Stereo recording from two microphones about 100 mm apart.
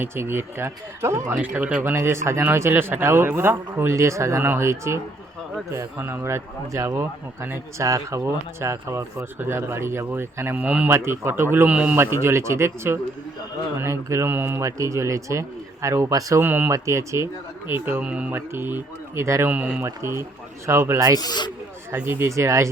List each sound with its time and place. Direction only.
0.0 s a man's voice: 25° right (ahead or behind)
1.4 s a man's voice: 15° right (ahead or behind)
10.9 s a man's voice: 25° right (ahead or behind)
11.9 s a man's voice: 25° right (ahead or behind)
14.6 s speech: 30° right (ahead or behind)
16.5 s a man's voice: 20° right (ahead or behind)
16.7 s speech: 30° right (ahead or behind)
17.8 s a man's voice: 15° right (ahead or behind)
19.5 s speech: 15° right (ahead or behind)
19.8 s a man's voice: 25° right (ahead or behind)
21.2 s speech: 45° left (ahead or behind)
21.9 s a man's voice: 20° right (ahead or behind)